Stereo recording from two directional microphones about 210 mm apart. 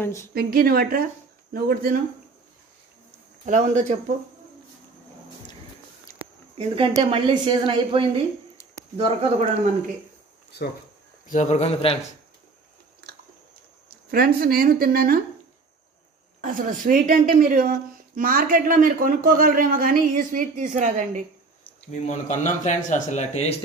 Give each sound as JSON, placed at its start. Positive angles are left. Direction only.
{"t": 0.0, "sound": "speech", "side_deg": 15}
{"t": 0.3, "sound": "speech", "side_deg": -45}
{"t": 3.4, "sound": "a woman's voice", "side_deg": -35}
{"t": 6.9, "sound": "a woman's voice", "side_deg": -25}
{"t": 11.2, "sound": "speech", "side_deg": 35}
{"t": 13.8, "sound": "speech", "side_deg": -45}
{"t": 16.3, "sound": "a woman's voice", "side_deg": -40}
{"t": 21.9, "sound": "speech", "side_deg": 35}